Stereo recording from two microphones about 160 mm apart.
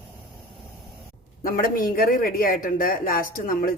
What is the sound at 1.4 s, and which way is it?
Speech, 60° left (ahead or behind).